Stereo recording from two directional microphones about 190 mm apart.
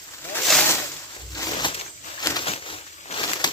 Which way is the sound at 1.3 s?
20° left (ahead or behind).